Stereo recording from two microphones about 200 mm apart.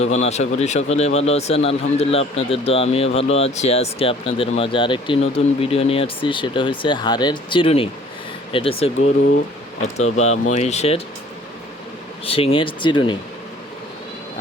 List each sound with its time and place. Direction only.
0.0 s speech: 35° left (ahead or behind)
12.2 s speech: 30° left (ahead or behind)